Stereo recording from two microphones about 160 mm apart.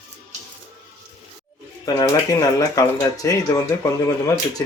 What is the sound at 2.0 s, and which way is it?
Speech, 25° left (ahead or behind).